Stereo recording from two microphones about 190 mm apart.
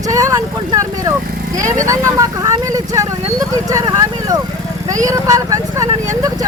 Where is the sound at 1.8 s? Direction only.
15° right (ahead or behind).